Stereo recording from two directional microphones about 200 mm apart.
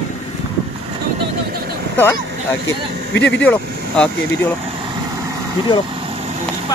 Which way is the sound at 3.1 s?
60° left (ahead or behind).